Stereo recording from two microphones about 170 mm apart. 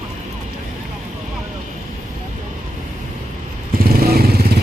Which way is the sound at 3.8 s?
60° right (ahead or behind).